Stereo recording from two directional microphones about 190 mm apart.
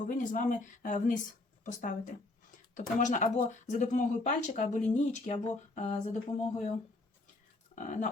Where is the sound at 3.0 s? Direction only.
40° left (ahead or behind).